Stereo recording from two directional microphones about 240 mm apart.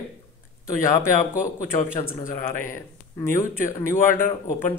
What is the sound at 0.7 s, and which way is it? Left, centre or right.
Speech, centre.